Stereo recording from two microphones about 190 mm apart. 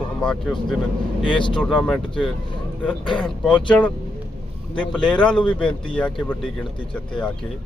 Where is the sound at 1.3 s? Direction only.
25° left (ahead or behind).